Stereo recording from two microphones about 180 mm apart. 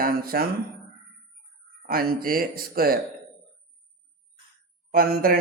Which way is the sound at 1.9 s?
55° right (ahead or behind).